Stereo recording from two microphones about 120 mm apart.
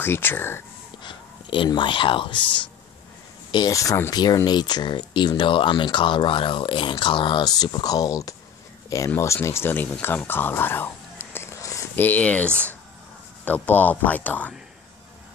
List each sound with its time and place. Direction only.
0.0 s speech: 15° left (ahead or behind)
1.0 s speech: 45° left (ahead or behind)
3.5 s speech: 30° left (ahead or behind)
4.5 s speech: 35° left (ahead or behind)
12.0 s speech: 15° left (ahead or behind)